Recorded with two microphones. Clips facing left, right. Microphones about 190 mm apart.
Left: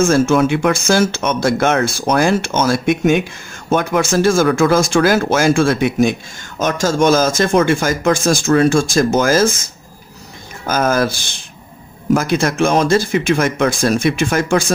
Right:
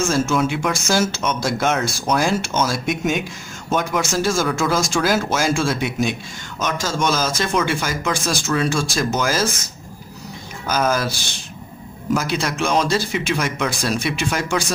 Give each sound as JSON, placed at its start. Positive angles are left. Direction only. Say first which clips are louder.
{"t": 0.0, "sound": "speech", "louder": "left 6 dB", "side_deg": 55}
{"t": 10.7, "sound": "speech", "louder": "left 4 dB", "side_deg": 50}